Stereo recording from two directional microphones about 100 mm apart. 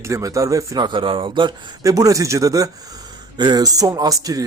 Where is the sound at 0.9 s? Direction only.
55° right (ahead or behind).